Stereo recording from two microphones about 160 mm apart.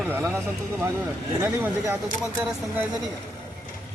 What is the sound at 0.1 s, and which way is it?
Speech, 15° right (ahead or behind).